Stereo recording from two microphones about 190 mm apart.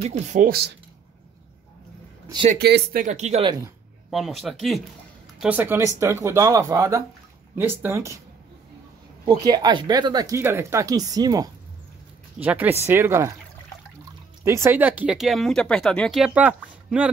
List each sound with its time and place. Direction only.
0.0 s speech: 40° right (ahead or behind)
2.6 s speech: 55° right (ahead or behind); by 3.5 s 35° right (ahead or behind)
4.1 s speech: centre (ahead or behind)
9.2 s speech: 25° right (ahead or behind)
12.4 s speech: 10° right (ahead or behind)
14.4 s speech: 15° right (ahead or behind)